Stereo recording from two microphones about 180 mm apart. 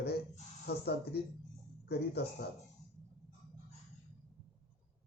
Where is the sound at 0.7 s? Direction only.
65° left (ahead or behind).